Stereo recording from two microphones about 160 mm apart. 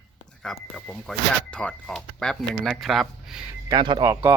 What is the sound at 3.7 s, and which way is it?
Speech, 30° right (ahead or behind).